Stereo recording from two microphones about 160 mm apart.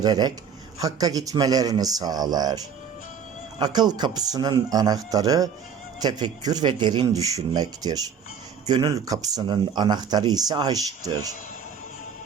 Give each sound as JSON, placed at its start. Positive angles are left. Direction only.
{"t": 0.0, "sound": "speech", "side_deg": -25}
{"t": 3.6, "sound": "speech", "side_deg": -25}